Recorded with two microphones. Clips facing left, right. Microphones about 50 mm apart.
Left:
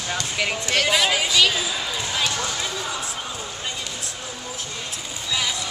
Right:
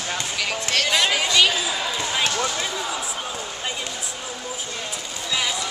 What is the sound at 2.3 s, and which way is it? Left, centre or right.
Speech, centre.